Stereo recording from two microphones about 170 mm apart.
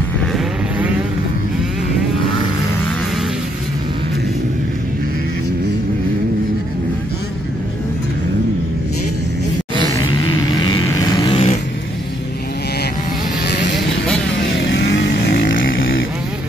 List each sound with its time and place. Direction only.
10.6 s vehicle: 25° left (ahead or behind)
13.5 s vehicle: 90° left; by 15.6 s 60° left (ahead or behind)